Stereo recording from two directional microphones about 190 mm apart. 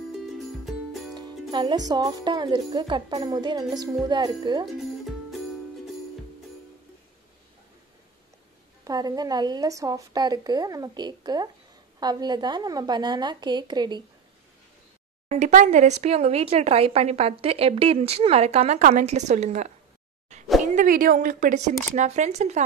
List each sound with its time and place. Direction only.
1.5 s a woman's voice: 25° right (ahead or behind)
8.8 s a woman's voice: 20° right (ahead or behind)
15.2 s speech: 40° right (ahead or behind)
20.7 s a woman's voice: 45° right (ahead or behind)